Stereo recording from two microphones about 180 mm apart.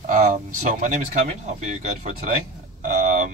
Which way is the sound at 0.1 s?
45° right (ahead or behind).